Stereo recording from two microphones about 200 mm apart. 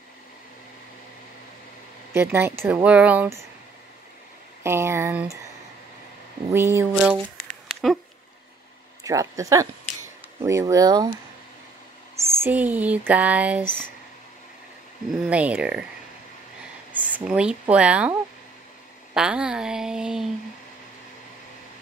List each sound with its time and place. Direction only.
2.1 s speech: 10° right (ahead or behind)
4.6 s speech: 15° right (ahead or behind)
6.5 s speech: 10° right (ahead or behind)
7.6 s a sound: centre (ahead or behind)
9.0 s speech: 15° right (ahead or behind)
12.3 s speech: 10° right (ahead or behind)
15.0 s a woman's voice: 5° right (ahead or behind)
16.9 s speech: 5° right (ahead or behind)
19.1 s a woman's voice: 5° right (ahead or behind)